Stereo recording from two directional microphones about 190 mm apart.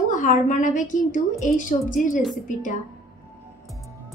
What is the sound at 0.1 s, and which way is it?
A woman's voice, 40° left (ahead or behind).